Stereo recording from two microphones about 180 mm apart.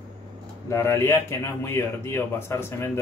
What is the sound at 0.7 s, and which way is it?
A man's voice, 15° left (ahead or behind).